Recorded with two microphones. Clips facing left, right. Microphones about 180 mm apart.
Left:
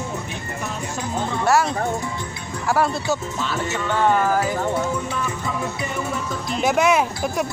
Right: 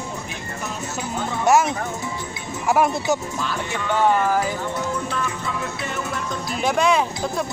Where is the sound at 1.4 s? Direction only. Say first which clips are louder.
Right 2 dB; 20° right (ahead or behind).